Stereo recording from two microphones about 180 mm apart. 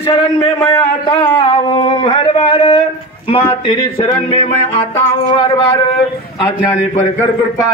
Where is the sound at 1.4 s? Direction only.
30° left (ahead or behind).